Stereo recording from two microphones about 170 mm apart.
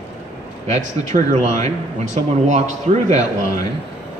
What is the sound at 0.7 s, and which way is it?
Speech, 45° right (ahead or behind).